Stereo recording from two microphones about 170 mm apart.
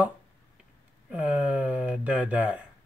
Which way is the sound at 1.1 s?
10° right (ahead or behind).